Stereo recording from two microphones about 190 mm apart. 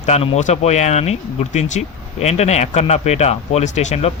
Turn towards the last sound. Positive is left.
turn(degrees=35)  # may be behind; listen again after turning